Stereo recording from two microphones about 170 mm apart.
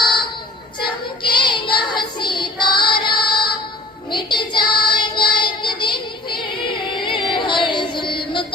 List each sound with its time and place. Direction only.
0.8 s child singing: 30° left (ahead or behind)
7.0 s music: 30° left (ahead or behind)